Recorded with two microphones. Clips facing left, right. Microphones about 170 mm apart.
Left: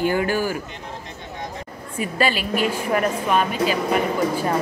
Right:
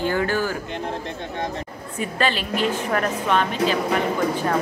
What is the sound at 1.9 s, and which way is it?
Speech, 10° left (ahead or behind).